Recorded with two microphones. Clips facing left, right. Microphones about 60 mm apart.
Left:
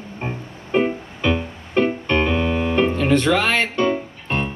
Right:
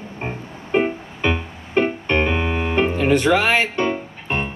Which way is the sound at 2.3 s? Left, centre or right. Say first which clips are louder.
Left 1 dB; centre.